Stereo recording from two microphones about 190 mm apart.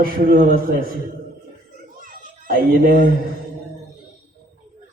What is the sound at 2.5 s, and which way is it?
Speech, 50° right (ahead or behind).